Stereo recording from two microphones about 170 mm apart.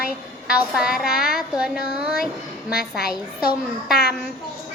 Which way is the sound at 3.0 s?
65° left (ahead or behind).